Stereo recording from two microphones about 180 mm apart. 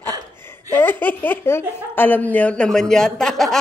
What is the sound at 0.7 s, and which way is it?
Speech, 10° left (ahead or behind).